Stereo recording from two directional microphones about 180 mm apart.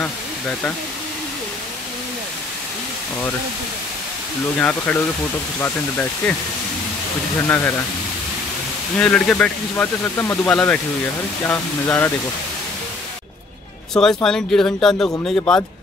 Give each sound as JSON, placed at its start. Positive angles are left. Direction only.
{"t": 0.0, "sound": "a sound", "side_deg": 10}
{"t": 4.6, "sound": "speech", "side_deg": 10}
{"t": 7.4, "sound": "speech", "side_deg": 10}
{"t": 8.9, "sound": "speech", "side_deg": 5}
{"t": 13.9, "sound": "speech", "side_deg": 5}